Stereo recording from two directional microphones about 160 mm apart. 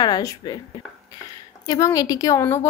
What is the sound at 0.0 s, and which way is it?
Speech, 25° left (ahead or behind).